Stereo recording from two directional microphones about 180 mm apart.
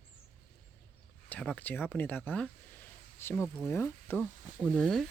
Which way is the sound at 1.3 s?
5° left (ahead or behind).